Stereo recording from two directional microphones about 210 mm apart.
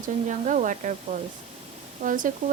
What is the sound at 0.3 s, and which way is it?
Speech, 35° right (ahead or behind).